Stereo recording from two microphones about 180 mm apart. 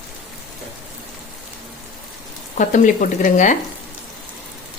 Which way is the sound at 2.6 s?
45° left (ahead or behind).